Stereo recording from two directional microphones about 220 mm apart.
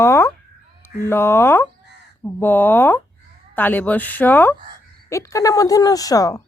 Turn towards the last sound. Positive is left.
turn(degrees=15)  # may be behind; listen again after turning